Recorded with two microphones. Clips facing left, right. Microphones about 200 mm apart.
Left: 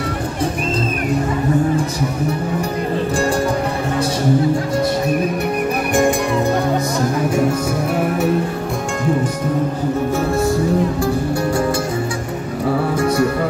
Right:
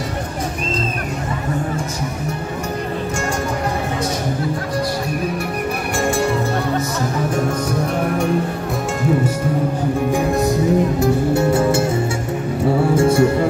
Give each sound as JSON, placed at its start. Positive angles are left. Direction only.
{"t": 10.1, "sound": "music", "side_deg": -20}
{"t": 12.9, "sound": "music", "side_deg": -25}